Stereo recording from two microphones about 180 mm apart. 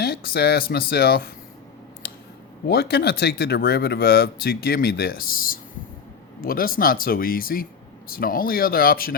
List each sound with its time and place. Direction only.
0.0 s speech: 60° left (ahead or behind)
2.6 s speech: 60° left (ahead or behind)